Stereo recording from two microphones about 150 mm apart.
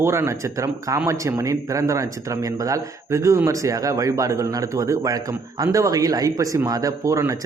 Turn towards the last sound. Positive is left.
turn(degrees=-20)  # may be behind; listen again after turning